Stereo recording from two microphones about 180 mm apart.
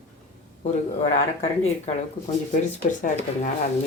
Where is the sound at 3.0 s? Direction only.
45° left (ahead or behind).